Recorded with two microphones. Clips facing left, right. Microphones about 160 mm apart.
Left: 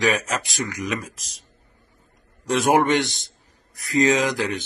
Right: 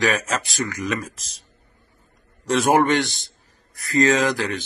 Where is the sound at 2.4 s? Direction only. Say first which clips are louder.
Right 1 dB; 15° left (ahead or behind).